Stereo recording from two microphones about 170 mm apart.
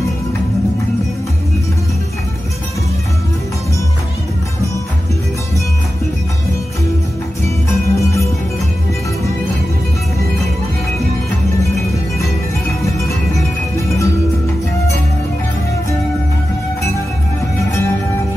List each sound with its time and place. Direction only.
7.4 s music: 15° left (ahead or behind)
13.7 s music: 20° left (ahead or behind)
17.6 s music: 15° left (ahead or behind)